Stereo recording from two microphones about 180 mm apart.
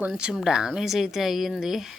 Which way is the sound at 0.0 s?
5° right (ahead or behind).